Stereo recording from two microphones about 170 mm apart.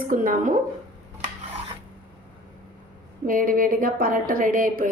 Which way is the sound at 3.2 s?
55° right (ahead or behind).